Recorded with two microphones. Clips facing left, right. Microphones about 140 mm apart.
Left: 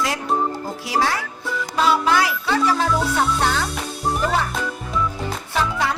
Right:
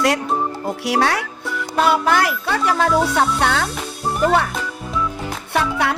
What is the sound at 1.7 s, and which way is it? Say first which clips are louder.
Music: right 2 dB; 55° right (ahead or behind).